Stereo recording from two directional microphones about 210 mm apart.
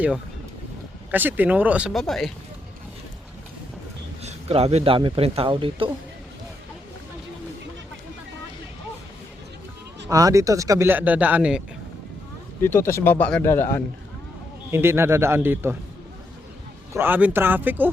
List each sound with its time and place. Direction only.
1.1 s a man's voice: 10° right (ahead or behind)
4.2 s speech: 30° right (ahead or behind)
10.1 s a man's voice: 15° right (ahead or behind)
12.6 s speech: 10° left (ahead or behind)
14.7 s a man's voice: 10° right (ahead or behind)
16.9 s a man's voice: 10° right (ahead or behind)